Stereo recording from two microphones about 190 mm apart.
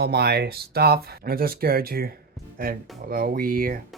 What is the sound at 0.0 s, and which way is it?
Speech, 60° right (ahead or behind).